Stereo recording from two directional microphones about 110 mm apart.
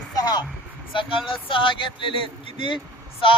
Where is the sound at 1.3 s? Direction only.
50° left (ahead or behind).